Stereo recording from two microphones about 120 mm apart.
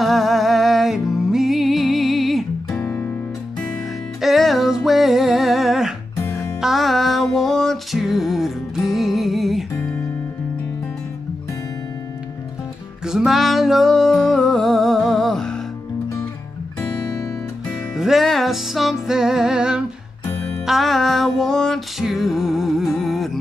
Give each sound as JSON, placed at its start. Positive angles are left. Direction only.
{"t": 0.0, "sound": "music", "side_deg": 0}
{"t": 2.7, "sound": "music", "side_deg": 20}
{"t": 4.2, "sound": "music", "side_deg": 0}
{"t": 6.2, "sound": "music", "side_deg": 25}
{"t": 6.6, "sound": "music", "side_deg": 0}
{"t": 9.8, "sound": "music", "side_deg": 15}
{"t": 13.0, "sound": "music", "side_deg": -5}
{"t": 17.9, "sound": "music", "side_deg": 0}